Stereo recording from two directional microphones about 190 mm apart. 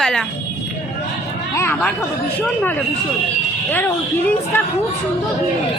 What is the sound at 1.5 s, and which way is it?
Speech, 10° left (ahead or behind).